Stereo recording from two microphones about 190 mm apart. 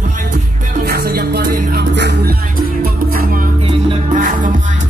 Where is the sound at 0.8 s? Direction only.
55° right (ahead or behind).